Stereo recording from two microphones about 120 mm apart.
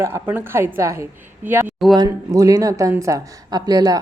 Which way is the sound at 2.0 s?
30° right (ahead or behind).